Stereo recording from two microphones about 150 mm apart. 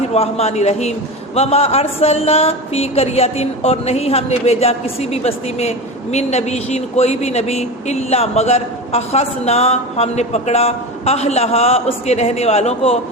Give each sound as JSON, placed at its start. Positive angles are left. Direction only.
{"t": 0.1, "sound": "speech", "side_deg": 45}